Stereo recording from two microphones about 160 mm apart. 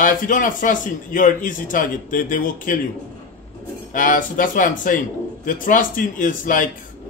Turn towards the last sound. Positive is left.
turn(degrees=55)  # may be behind; listen again after turning